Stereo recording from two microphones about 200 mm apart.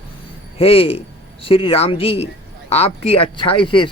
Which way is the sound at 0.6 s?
30° left (ahead or behind).